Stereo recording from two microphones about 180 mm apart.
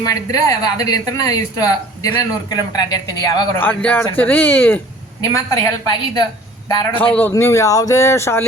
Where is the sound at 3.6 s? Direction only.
10° left (ahead or behind).